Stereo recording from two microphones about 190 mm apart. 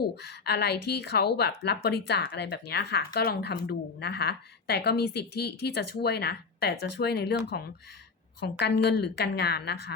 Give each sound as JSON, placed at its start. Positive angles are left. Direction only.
{"t": 0.0, "sound": "a woman's voice", "side_deg": 60}
{"t": 8.4, "sound": "a woman's voice", "side_deg": 60}